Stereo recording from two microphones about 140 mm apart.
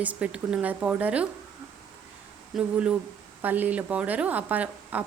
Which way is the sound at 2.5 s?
5° right (ahead or behind).